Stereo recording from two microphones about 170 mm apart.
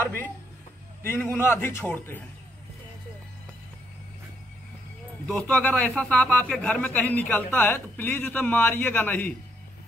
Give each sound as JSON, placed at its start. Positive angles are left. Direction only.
{"t": 1.0, "sound": "speech", "side_deg": 15}
{"t": 5.2, "sound": "speech", "side_deg": 5}